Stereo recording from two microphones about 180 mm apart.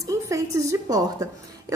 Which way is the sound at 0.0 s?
15° right (ahead or behind).